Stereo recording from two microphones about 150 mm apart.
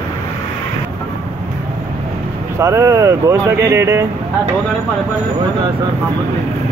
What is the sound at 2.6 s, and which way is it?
Speech, 20° right (ahead or behind).